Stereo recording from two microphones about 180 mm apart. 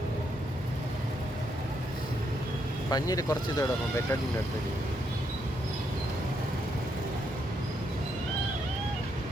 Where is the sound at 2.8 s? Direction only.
20° left (ahead or behind).